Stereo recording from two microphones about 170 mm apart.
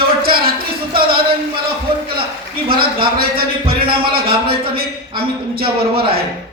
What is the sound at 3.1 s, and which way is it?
A man's voice, 60° right (ahead or behind).